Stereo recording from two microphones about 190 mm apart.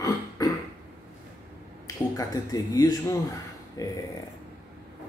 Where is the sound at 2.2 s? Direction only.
20° left (ahead or behind).